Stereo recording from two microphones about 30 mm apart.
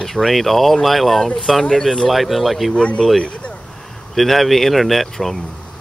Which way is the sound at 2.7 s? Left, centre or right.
Left.